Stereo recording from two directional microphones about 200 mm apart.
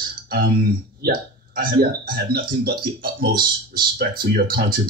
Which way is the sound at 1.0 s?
45° right (ahead or behind).